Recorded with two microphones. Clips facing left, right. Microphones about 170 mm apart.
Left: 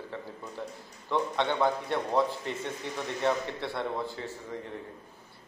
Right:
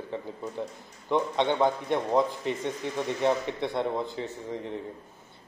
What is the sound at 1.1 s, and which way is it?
A man's voice, 20° right (ahead or behind).